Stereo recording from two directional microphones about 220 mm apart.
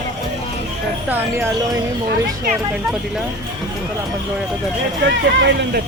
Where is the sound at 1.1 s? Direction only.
10° right (ahead or behind).